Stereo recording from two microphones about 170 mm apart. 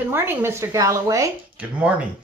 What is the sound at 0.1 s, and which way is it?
Speech, 15° right (ahead or behind).